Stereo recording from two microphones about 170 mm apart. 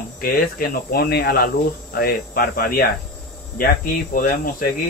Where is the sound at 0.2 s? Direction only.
60° left (ahead or behind).